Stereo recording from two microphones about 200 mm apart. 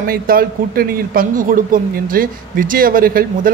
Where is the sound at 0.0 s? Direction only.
45° right (ahead or behind).